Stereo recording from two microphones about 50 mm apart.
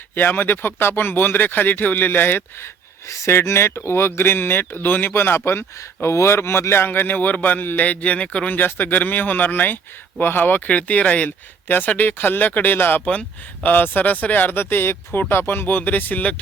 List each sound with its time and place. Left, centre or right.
0.1 s speech: left
2.6 s speech: left
5.5 s speech: left
8.5 s speech: left
10.7 s speech: left
11.3 s speech: left
13.1 s speech: left